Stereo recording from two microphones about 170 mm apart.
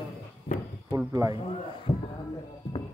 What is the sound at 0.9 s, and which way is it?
Speech, 20° right (ahead or behind).